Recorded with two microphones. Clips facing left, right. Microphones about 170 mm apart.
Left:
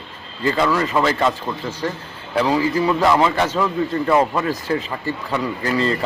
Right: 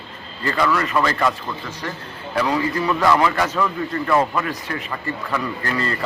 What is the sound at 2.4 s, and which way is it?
A man's voice, 30° left (ahead or behind).